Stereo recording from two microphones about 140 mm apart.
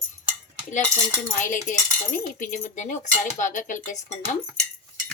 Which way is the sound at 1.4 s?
70° left (ahead or behind).